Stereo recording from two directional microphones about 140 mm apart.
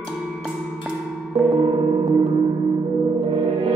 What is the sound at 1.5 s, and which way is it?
Music, 25° right (ahead or behind).